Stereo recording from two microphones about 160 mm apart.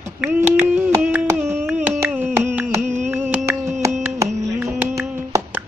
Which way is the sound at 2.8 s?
45° right (ahead or behind).